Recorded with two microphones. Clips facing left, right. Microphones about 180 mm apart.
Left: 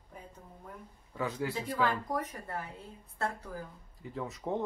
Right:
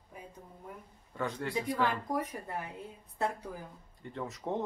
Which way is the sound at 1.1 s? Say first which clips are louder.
Left 1 dB; 5° left (ahead or behind).